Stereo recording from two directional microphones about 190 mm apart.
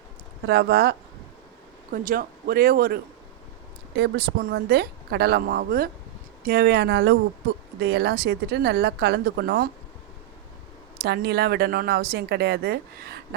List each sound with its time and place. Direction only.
0.4 s a woman's voice: 65° right (ahead or behind)
1.9 s a woman's voice: 45° right (ahead or behind)
11.0 s a woman's voice: 60° right (ahead or behind)